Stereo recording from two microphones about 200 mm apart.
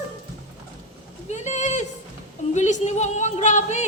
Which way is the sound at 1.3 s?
35° left (ahead or behind).